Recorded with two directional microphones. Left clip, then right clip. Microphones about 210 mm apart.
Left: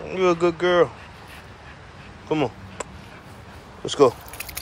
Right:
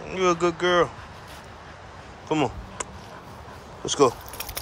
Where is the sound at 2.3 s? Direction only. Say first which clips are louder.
Left 1 dB; 15° right (ahead or behind).